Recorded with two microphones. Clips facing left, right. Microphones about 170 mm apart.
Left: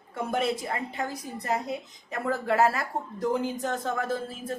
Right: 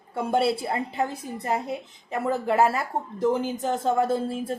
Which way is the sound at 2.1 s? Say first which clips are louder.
Right 3 dB; 25° right (ahead or behind).